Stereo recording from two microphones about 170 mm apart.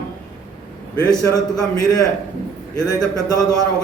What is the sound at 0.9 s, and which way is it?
A man's voice, 20° left (ahead or behind).